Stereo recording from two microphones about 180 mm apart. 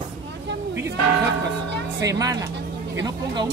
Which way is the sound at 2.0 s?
20° right (ahead or behind).